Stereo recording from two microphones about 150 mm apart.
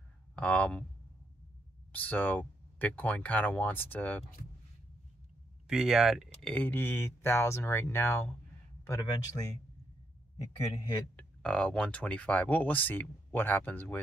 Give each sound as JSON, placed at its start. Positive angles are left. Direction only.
{"t": 0.4, "sound": "speech", "side_deg": 10}
{"t": 1.9, "sound": "speech", "side_deg": 10}
{"t": 5.7, "sound": "speech", "side_deg": -5}
{"t": 6.4, "sound": "speech", "side_deg": 10}
{"t": 11.1, "sound": "speech", "side_deg": 5}